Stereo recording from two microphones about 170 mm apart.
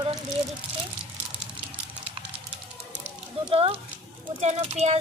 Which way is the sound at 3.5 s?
35° right (ahead or behind).